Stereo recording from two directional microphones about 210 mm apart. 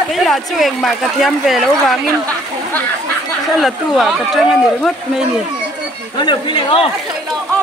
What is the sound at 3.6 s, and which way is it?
Speech, centre (ahead or behind).